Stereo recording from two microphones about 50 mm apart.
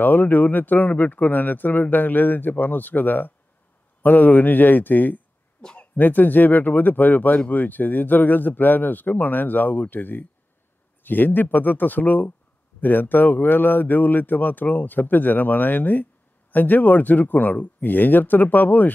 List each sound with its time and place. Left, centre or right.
0.0 s speech: left
5.6 s a sound: centre
5.9 s speech: left